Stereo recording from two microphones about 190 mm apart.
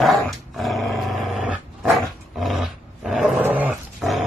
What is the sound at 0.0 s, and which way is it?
Dog, centre (ahead or behind).